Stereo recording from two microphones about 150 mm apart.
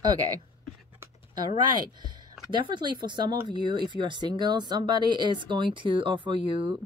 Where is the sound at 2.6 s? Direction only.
30° right (ahead or behind).